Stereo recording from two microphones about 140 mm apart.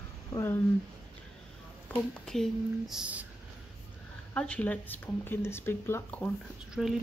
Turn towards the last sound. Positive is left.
turn(degrees=-5)  # may be behind; listen again after turning